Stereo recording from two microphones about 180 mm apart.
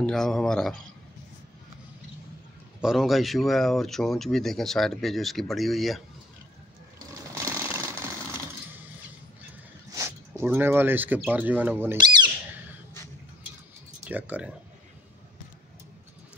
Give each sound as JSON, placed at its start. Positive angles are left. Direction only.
{"t": 0.0, "sound": "speech", "side_deg": 5}
{"t": 2.8, "sound": "speech", "side_deg": 0}
{"t": 7.3, "sound": "sewing machine", "side_deg": -15}
{"t": 9.9, "sound": "speech", "side_deg": -15}
{"t": 12.0, "sound": "a sound", "side_deg": -25}
{"t": 14.0, "sound": "speech", "side_deg": -10}